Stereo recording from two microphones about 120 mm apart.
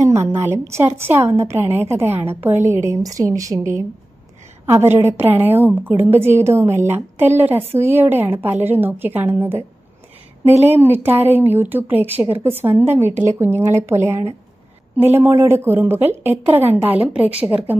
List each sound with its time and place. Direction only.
0.1 s a woman's voice: 20° right (ahead or behind)